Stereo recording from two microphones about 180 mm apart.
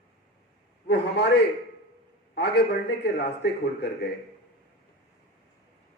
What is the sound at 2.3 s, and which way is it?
A man's voice, 70° left (ahead or behind).